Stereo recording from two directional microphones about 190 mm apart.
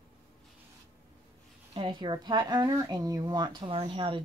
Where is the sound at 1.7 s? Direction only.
25° right (ahead or behind).